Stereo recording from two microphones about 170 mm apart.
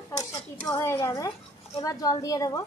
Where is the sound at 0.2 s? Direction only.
20° left (ahead or behind).